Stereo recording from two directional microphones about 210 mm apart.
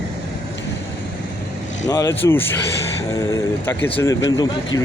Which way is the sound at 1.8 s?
15° left (ahead or behind).